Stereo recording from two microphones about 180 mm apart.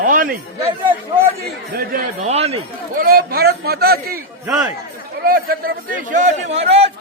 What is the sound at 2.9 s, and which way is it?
A man's voice, 55° right (ahead or behind).